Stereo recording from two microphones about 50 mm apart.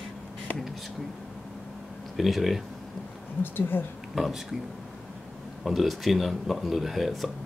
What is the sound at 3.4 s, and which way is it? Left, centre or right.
Speech, left.